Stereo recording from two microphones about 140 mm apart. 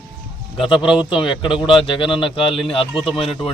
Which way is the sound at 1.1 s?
35° left (ahead or behind).